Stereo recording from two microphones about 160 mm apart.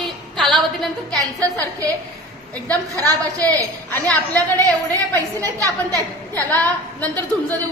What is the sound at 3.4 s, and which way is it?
A woman's voice, 10° left (ahead or behind).